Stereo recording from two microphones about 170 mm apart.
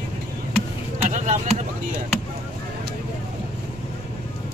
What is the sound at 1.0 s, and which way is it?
Speech, 45° right (ahead or behind).